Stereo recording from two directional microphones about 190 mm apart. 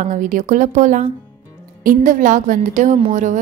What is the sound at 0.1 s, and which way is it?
A woman's voice, 45° right (ahead or behind).